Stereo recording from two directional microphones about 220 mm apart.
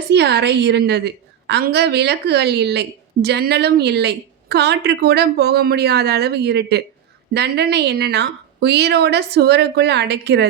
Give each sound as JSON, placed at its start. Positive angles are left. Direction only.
{"t": 0.1, "sound": "a woman's voice", "side_deg": -50}